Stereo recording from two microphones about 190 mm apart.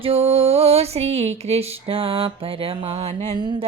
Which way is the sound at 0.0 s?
30° right (ahead or behind).